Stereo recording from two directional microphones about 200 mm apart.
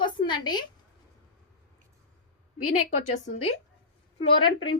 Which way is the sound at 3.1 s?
30° left (ahead or behind).